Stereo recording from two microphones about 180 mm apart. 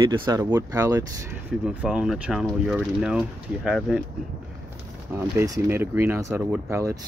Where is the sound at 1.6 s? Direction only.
5° right (ahead or behind).